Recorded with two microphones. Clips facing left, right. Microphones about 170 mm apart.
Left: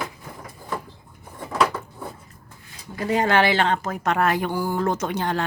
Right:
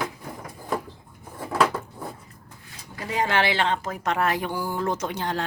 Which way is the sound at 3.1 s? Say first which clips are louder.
Left 4 dB; 50° left (ahead or behind).